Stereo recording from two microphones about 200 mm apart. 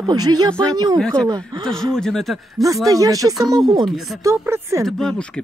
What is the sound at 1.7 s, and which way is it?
Speech, centre (ahead or behind).